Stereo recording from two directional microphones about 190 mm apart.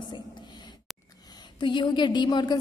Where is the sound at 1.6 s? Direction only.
25° left (ahead or behind).